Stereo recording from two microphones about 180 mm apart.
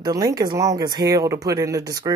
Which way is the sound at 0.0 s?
20° right (ahead or behind).